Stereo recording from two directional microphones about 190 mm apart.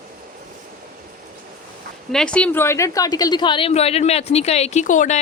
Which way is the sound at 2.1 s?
5° left (ahead or behind).